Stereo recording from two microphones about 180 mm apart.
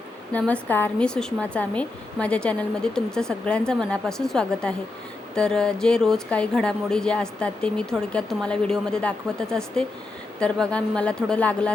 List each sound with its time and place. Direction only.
0.3 s speech: 10° left (ahead or behind)